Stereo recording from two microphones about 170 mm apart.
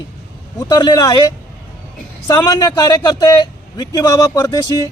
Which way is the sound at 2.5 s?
25° left (ahead or behind).